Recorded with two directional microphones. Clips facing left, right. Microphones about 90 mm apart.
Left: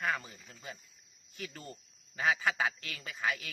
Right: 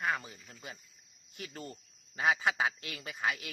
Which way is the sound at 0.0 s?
20° right (ahead or behind).